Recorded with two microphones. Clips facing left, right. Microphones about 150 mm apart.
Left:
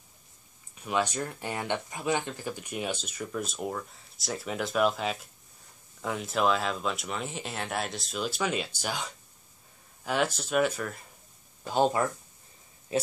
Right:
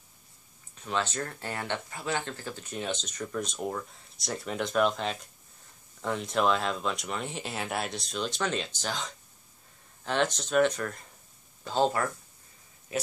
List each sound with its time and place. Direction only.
0.7 s speech: 10° left (ahead or behind)
11.6 s speech: 15° left (ahead or behind)
12.9 s speech: 30° left (ahead or behind)